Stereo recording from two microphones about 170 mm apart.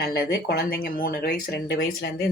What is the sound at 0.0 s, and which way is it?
Speech, 65° left (ahead or behind).